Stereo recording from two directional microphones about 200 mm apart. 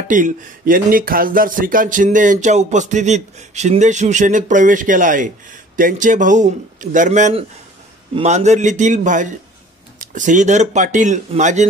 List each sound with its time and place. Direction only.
0.1 s speech: 40° right (ahead or behind)